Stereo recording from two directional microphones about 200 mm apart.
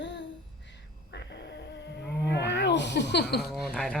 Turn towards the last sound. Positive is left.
turn(degrees=5)  # may be behind; listen again after turning